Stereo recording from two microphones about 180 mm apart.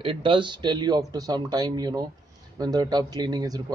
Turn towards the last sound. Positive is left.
turn(degrees=-20)  # may be behind; listen again after turning